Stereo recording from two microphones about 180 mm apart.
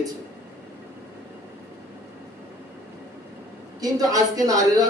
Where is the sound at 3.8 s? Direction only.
20° right (ahead or behind).